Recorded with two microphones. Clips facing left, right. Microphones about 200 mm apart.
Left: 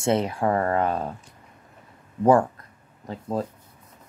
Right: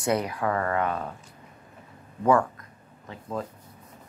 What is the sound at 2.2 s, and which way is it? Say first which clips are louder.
Speech: left 4 dB; 30° left (ahead or behind).